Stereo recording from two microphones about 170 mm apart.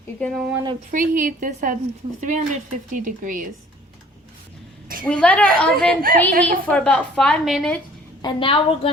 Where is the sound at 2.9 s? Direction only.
50° right (ahead or behind).